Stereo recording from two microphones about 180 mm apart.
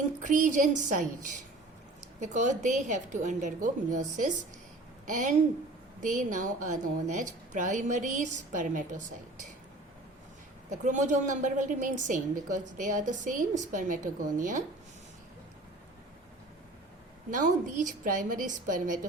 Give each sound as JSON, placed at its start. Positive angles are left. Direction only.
{"t": 0.2, "sound": "a woman's voice", "side_deg": -45}
{"t": 10.7, "sound": "a woman's voice", "side_deg": -45}
{"t": 17.3, "sound": "a woman's voice", "side_deg": -45}